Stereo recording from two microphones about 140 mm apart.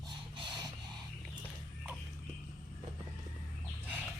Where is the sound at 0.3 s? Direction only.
30° right (ahead or behind).